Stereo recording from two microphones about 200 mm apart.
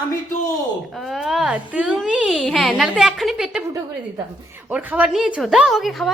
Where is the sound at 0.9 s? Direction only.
Centre (ahead or behind).